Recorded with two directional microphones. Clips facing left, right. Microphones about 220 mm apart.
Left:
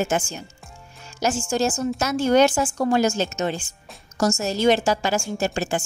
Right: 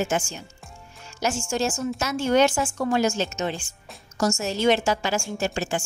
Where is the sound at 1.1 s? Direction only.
40° left (ahead or behind).